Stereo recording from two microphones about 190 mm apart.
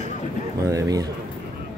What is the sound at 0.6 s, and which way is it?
Bird, 15° right (ahead or behind).